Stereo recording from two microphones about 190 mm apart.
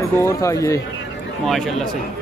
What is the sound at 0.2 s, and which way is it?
Speech, 15° left (ahead or behind).